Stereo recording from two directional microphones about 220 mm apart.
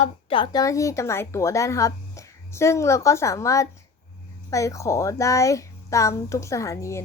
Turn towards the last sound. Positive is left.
turn(degrees=15)  # may be behind; listen again after turning